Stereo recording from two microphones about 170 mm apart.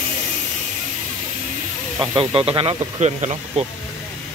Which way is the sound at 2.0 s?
30° right (ahead or behind).